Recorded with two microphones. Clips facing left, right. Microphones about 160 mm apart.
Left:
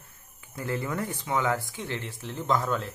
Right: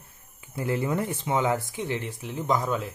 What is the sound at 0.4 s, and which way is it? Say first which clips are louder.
Speech: right 4 dB; 25° right (ahead or behind).